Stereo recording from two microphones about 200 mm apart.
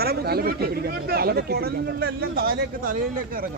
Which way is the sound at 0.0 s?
50° right (ahead or behind).